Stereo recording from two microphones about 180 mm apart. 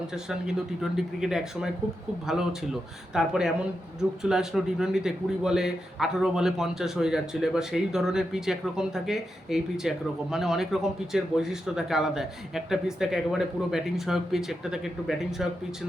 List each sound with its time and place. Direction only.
0.1 s a man's voice: 5° right (ahead or behind)